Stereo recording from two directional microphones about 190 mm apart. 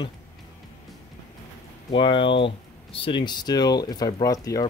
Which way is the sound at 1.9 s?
25° left (ahead or behind).